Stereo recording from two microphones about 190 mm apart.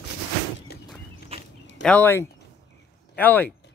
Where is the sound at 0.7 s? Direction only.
55° left (ahead or behind).